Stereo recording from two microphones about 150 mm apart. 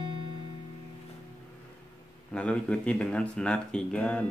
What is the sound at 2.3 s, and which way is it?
Speech, 5° left (ahead or behind).